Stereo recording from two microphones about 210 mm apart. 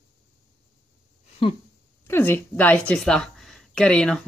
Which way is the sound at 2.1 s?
10° left (ahead or behind).